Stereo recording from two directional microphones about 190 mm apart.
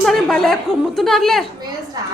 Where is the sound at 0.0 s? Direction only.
Centre (ahead or behind).